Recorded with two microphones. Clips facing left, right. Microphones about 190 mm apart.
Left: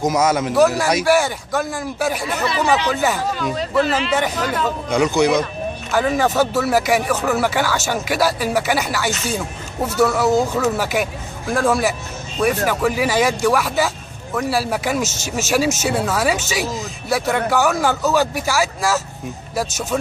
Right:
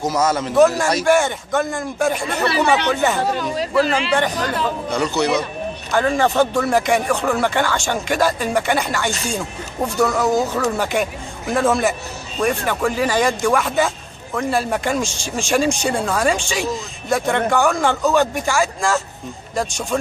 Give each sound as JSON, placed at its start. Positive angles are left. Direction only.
{"t": 0.0, "sound": "speech", "side_deg": 15}